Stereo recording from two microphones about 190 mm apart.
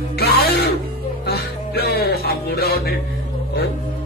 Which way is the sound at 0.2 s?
55° left (ahead or behind).